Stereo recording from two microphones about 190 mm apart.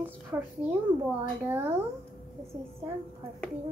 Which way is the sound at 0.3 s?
10° right (ahead or behind).